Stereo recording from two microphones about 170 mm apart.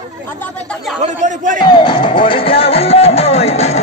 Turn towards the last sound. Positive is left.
turn(degrees=40)  # may be behind; listen again after turning